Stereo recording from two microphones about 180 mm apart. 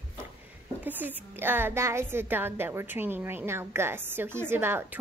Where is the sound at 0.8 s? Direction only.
10° right (ahead or behind).